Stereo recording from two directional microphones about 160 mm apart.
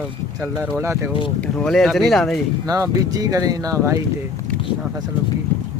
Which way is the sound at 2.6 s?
20° right (ahead or behind).